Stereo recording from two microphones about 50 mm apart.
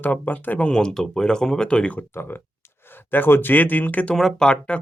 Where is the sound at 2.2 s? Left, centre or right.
Left.